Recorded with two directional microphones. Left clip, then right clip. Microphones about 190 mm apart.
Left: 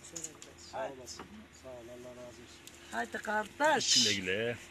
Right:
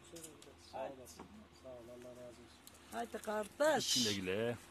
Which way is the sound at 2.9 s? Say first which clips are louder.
Left 7 dB; 25° right (ahead or behind).